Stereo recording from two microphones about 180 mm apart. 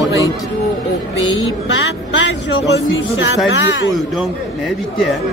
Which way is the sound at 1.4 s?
90° left.